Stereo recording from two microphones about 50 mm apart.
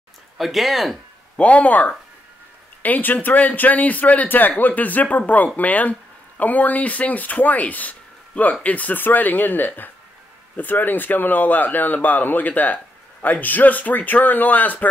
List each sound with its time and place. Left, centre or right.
0.4 s speech: centre
1.3 s speech: left